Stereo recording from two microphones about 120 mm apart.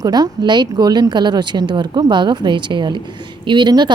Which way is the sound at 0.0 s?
35° right (ahead or behind).